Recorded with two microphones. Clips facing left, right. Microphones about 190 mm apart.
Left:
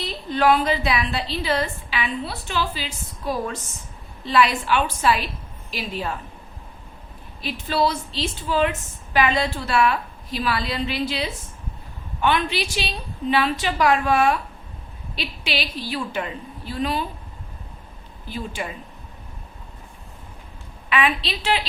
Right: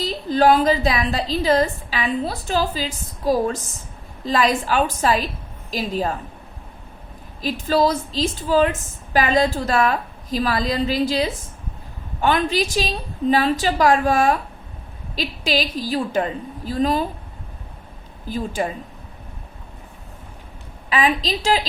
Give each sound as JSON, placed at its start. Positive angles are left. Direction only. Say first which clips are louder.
{"t": 0.0, "sound": "a woman's voice", "louder": "right 4 dB", "side_deg": -40}
{"t": 7.7, "sound": "a woman's voice", "louder": "right 4 dB", "side_deg": -40}
{"t": 18.3, "sound": "a woman's voice", "louder": "right 6 dB", "side_deg": -40}
{"t": 20.9, "sound": "a woman's voice", "louder": "right 3 dB", "side_deg": -35}